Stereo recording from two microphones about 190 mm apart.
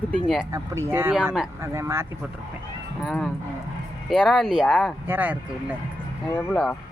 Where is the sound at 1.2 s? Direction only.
Centre (ahead or behind).